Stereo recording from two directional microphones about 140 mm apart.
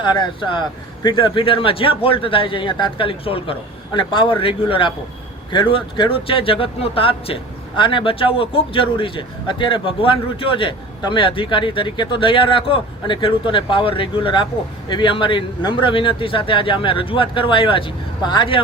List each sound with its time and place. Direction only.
0.0 s speech: 35° left (ahead or behind)